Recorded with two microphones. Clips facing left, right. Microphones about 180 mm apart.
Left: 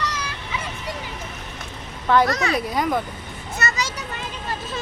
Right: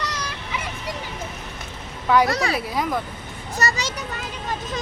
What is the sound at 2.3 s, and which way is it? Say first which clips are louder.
Speech: even; 35° right (ahead or behind).